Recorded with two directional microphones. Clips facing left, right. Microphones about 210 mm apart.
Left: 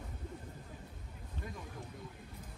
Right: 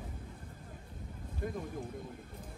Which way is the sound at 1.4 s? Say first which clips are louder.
Right 9 dB; 50° right (ahead or behind).